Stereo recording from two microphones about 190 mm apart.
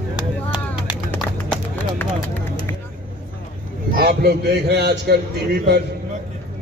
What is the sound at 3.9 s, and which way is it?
A man's voice, 55° right (ahead or behind).